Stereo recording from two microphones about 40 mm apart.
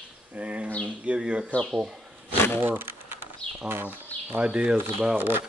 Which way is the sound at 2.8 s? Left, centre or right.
Right.